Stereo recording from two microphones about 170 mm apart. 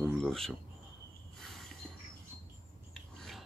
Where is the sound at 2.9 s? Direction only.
Centre (ahead or behind).